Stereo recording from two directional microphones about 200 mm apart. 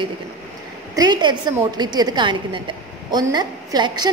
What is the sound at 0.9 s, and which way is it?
A woman's voice, 20° right (ahead or behind).